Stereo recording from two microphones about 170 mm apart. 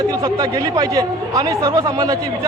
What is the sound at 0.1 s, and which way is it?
Speech, 20° right (ahead or behind).